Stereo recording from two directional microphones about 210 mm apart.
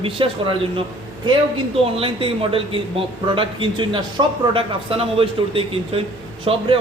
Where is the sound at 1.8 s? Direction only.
25° right (ahead or behind).